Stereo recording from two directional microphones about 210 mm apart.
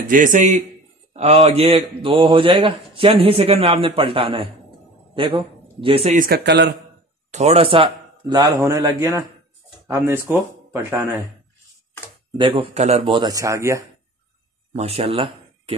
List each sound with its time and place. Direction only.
0.0 s a man's voice: 40° right (ahead or behind)
6.1 s a man's voice: 45° right (ahead or behind)
7.2 s a man's voice: 30° right (ahead or behind); by 11.1 s 10° right (ahead or behind)
12.4 s a man's voice: 25° right (ahead or behind)
14.7 s speech: 30° right (ahead or behind)